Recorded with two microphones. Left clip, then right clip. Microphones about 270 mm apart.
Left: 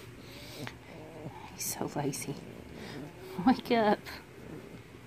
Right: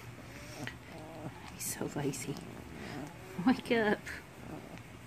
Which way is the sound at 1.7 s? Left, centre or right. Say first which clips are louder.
Left 2 dB; centre.